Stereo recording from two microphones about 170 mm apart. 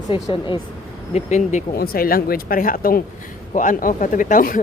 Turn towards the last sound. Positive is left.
turn(degrees=50)  # may be behind; listen again after turning